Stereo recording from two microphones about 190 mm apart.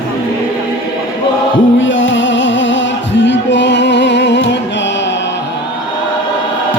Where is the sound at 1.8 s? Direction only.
80° left.